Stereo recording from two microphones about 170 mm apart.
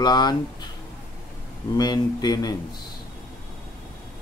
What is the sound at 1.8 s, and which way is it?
Speech, 25° left (ahead or behind).